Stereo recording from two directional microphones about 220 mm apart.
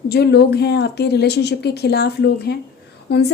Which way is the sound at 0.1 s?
45° left (ahead or behind).